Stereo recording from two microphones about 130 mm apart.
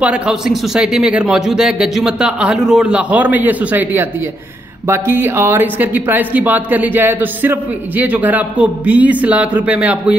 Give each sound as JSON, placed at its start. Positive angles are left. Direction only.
{"t": 0.0, "sound": "speech", "side_deg": -10}